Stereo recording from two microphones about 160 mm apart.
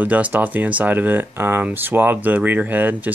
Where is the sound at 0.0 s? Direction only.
10° right (ahead or behind).